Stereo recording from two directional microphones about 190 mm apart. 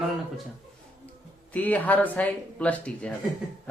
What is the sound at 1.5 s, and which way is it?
A man's voice, 10° left (ahead or behind).